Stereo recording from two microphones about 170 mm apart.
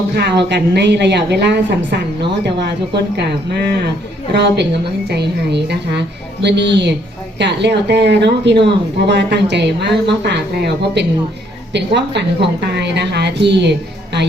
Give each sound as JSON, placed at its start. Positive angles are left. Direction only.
{"t": 0.2, "sound": "a woman's voice", "side_deg": -85}
{"t": 4.4, "sound": "a woman's voice", "side_deg": -90}
{"t": 5.0, "sound": "a woman's voice", "side_deg": -75}